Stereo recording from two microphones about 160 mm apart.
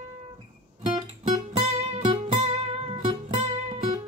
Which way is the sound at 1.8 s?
40° right (ahead or behind).